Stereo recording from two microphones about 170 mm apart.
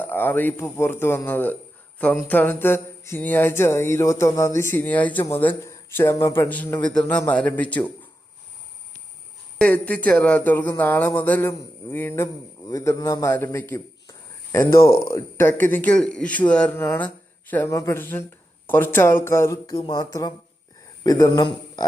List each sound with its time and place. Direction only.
0.0 s a man's voice: 10° left (ahead or behind)
9.6 s a man's voice: 10° left (ahead or behind)